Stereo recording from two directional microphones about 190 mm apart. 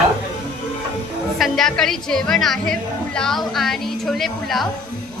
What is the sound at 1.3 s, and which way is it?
A woman's voice, centre (ahead or behind).